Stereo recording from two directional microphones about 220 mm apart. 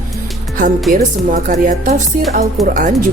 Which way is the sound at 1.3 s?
35° right (ahead or behind).